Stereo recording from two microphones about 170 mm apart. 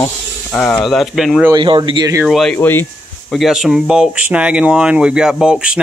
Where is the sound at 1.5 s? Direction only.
30° right (ahead or behind).